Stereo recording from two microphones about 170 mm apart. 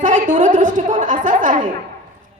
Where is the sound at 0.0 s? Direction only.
50° right (ahead or behind).